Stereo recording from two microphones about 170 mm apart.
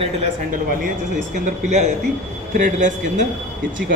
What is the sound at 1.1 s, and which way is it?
A man's voice, 45° right (ahead or behind).